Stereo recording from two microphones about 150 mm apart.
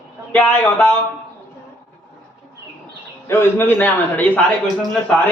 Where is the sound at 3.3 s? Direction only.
15° left (ahead or behind).